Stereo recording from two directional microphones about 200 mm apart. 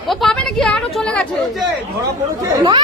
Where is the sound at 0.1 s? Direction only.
Centre (ahead or behind).